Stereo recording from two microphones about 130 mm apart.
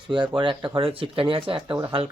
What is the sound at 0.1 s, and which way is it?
Speech, 40° right (ahead or behind).